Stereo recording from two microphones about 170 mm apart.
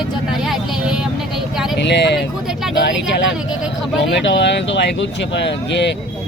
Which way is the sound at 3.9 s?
90° left.